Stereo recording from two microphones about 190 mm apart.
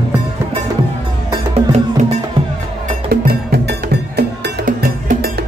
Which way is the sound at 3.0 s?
55° right (ahead or behind).